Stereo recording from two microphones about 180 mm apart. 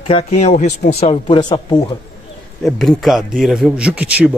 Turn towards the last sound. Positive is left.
turn(degrees=-5)  # may be behind; listen again after turning